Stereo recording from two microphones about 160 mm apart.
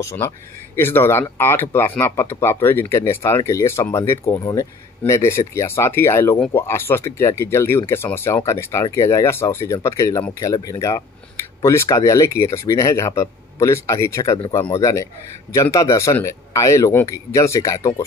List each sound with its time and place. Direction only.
0.7 s speech: 15° left (ahead or behind)